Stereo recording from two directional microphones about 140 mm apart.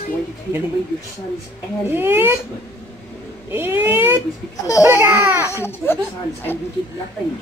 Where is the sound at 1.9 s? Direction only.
15° right (ahead or behind).